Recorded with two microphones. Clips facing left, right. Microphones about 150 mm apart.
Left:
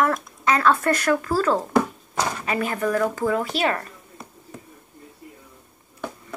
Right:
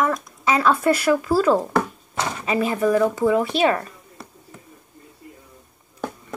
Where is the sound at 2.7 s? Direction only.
10° right (ahead or behind).